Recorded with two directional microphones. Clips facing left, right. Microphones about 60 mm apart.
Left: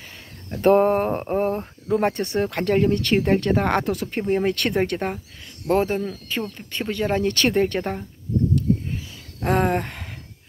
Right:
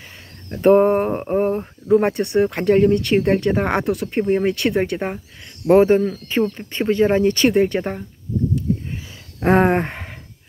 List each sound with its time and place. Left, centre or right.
0.5 s speech: centre
5.7 s speech: right; by 8.0 s centre
8.5 s a sound: right